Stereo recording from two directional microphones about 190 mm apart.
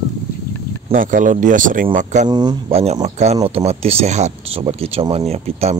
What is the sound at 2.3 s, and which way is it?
Speech, 20° right (ahead or behind).